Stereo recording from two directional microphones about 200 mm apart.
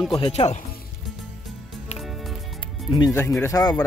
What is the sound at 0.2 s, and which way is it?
Speech, 30° left (ahead or behind).